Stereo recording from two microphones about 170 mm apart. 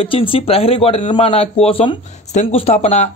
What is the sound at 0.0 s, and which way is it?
Speech, 30° left (ahead or behind).